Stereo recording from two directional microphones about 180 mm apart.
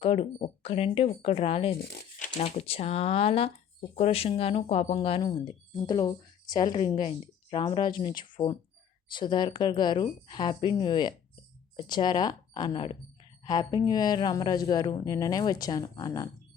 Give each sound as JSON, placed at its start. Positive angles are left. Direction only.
{"t": 0.0, "sound": "speech", "side_deg": 35}
{"t": 1.8, "sound": "speech", "side_deg": 60}
{"t": 2.6, "sound": "speech", "side_deg": 35}